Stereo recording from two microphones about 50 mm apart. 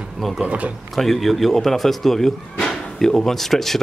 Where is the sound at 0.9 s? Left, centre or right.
Centre.